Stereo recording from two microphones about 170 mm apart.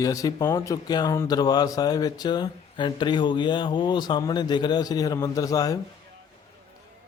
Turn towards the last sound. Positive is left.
turn(degrees=20)  # may be behind; listen again after turning